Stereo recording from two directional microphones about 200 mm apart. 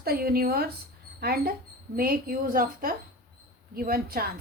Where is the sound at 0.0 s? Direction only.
50° right (ahead or behind).